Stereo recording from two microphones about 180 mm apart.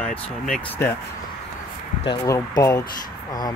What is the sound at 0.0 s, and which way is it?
Speech, 10° left (ahead or behind).